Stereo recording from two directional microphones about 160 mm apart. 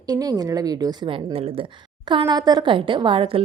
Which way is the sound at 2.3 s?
25° right (ahead or behind).